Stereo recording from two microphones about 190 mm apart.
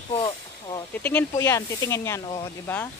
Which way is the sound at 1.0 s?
10° left (ahead or behind).